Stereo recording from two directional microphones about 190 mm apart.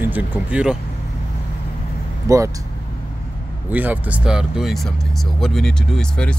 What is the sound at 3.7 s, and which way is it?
Speech, 10° right (ahead or behind).